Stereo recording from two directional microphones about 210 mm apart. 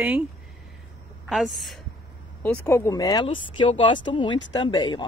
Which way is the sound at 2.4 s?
10° left (ahead or behind).